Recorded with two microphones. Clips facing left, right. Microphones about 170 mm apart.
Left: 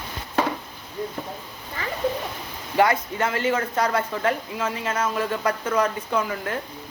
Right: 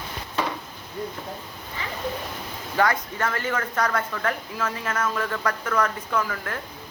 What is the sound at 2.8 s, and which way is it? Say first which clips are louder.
Speech: left 3 dB; 20° left (ahead or behind).